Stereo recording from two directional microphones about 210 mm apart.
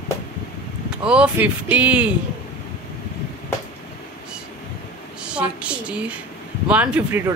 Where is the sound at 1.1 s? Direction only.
5° right (ahead or behind).